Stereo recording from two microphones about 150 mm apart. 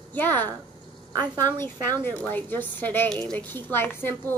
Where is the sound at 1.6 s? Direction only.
15° left (ahead or behind).